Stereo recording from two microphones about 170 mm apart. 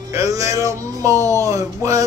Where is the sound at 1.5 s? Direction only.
20° right (ahead or behind).